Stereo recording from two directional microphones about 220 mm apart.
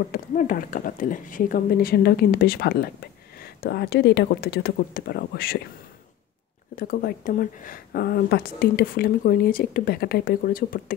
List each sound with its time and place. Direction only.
0.1 s speech: 40° left (ahead or behind)
6.7 s a woman's voice: 40° left (ahead or behind)